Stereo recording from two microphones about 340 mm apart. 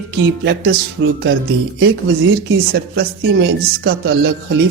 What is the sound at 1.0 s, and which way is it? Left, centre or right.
Music, right.